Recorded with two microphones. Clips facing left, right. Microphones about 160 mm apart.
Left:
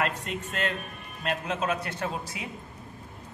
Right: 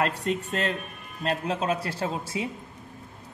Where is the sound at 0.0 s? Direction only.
35° right (ahead or behind).